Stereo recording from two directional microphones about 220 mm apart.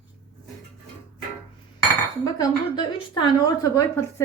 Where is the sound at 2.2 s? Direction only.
15° left (ahead or behind).